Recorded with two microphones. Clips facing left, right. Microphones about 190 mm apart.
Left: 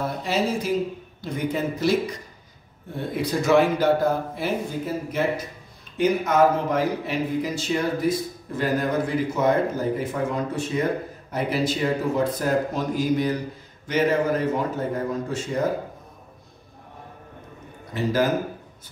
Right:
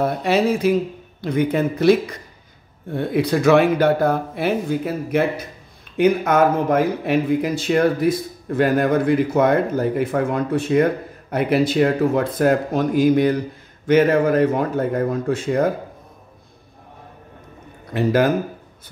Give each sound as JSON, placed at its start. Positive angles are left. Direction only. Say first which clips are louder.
{"t": 0.0, "sound": "speech", "louder": "right 6 dB", "side_deg": -65}
{"t": 17.9, "sound": "speech", "louder": "right 6 dB", "side_deg": -60}